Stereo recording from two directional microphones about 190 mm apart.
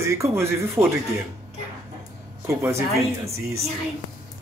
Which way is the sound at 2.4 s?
15° right (ahead or behind).